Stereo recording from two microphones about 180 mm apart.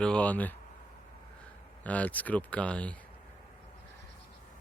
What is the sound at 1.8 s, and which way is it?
Speech, 10° left (ahead or behind).